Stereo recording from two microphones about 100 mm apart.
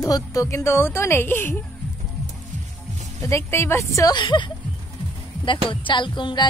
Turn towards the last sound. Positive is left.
turn(degrees=50)  # may be behind; listen again after turning